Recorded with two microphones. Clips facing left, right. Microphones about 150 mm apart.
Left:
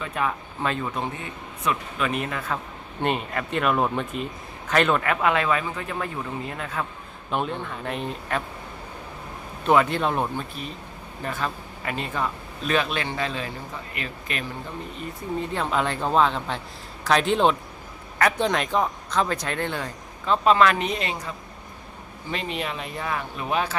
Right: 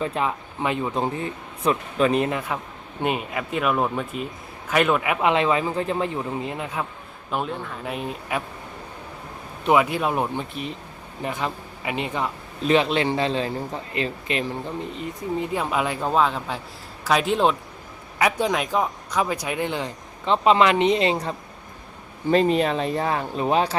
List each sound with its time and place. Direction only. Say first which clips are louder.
0.0 s speech: right 3 dB; 25° right (ahead or behind)
0.9 s speech: right 5 dB; 30° right (ahead or behind)
3.0 s speech: even; 5° right (ahead or behind)
7.3 s speech: even; centre (ahead or behind)
9.6 s speech: right 1 dB; 10° right (ahead or behind); by 14.4 s 25° right (ahead or behind)
14.9 s speech: even; 15° right (ahead or behind); by 23.7 s 30° right (ahead or behind)